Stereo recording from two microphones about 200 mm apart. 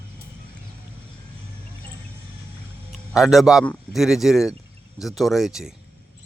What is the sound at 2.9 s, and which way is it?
A man's voice, centre (ahead or behind).